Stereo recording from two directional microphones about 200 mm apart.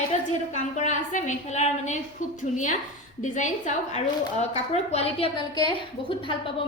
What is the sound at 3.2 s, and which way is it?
A woman's voice, 40° left (ahead or behind).